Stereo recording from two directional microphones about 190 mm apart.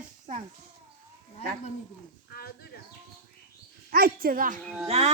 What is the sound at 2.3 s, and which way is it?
Speech, 55° left (ahead or behind).